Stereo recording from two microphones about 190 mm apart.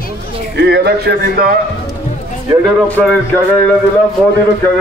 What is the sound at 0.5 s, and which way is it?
A man's voice, 60° right (ahead or behind).